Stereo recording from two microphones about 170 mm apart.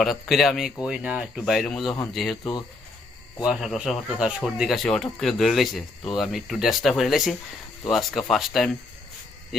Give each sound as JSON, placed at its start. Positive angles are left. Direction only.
{"t": 0.0, "sound": "speech", "side_deg": 0}
{"t": 2.4, "sound": "speech", "side_deg": 25}
{"t": 3.4, "sound": "speech", "side_deg": 0}